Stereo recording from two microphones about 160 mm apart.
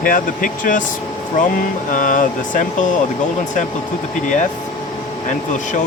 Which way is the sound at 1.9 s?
55° left (ahead or behind).